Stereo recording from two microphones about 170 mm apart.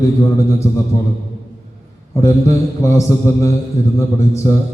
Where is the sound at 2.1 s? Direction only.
15° left (ahead or behind).